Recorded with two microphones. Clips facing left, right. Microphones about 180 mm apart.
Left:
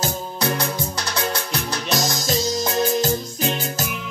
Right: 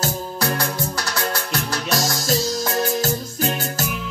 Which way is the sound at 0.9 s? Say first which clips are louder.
Even; 20° left (ahead or behind).